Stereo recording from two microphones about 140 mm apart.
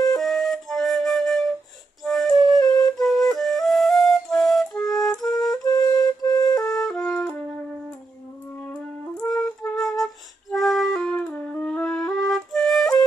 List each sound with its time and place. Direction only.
0.1 s flute: centre (ahead or behind)
2.6 s flute: 25° left (ahead or behind)
3.0 s flute: centre (ahead or behind)
5.7 s flute: 25° left (ahead or behind)
6.6 s flute: 5° left (ahead or behind)
8.6 s music: 5° left (ahead or behind)
9.8 s flute: centre (ahead or behind)